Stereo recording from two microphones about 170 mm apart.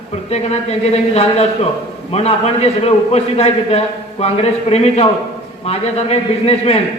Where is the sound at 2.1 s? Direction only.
40° left (ahead or behind).